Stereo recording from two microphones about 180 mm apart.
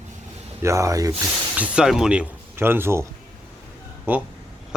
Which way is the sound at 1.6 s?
5° right (ahead or behind).